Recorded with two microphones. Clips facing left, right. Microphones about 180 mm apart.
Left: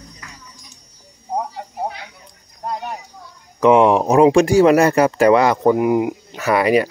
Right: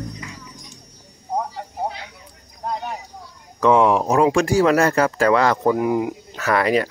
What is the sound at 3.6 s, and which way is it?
Speech, 15° left (ahead or behind).